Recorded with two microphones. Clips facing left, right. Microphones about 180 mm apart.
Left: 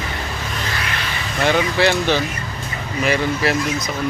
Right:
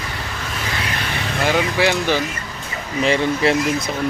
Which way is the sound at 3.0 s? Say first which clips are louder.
Right 2 dB; 25° right (ahead or behind).